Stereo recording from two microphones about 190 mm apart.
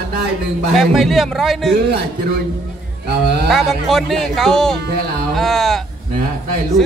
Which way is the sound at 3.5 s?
Centre (ahead or behind).